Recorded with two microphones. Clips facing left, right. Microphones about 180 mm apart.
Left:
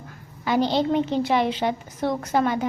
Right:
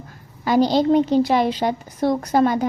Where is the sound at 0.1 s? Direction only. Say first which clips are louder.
Right 4 dB; 40° right (ahead or behind).